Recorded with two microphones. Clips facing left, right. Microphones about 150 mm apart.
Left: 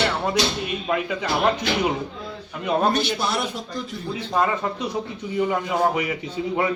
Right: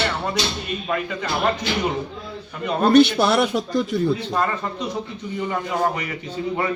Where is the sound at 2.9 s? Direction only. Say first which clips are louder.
Right 9 dB; 65° right (ahead or behind).